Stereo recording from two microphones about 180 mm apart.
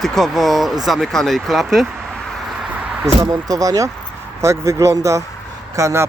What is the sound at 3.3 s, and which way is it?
A man's voice, 20° right (ahead or behind).